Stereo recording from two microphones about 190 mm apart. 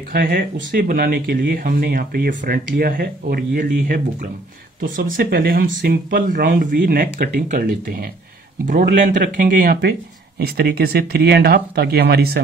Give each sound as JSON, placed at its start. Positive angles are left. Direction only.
{"t": 0.1, "sound": "speech", "side_deg": -55}